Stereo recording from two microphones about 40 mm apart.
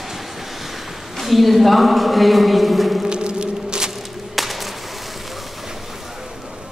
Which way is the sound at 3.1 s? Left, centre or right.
Right.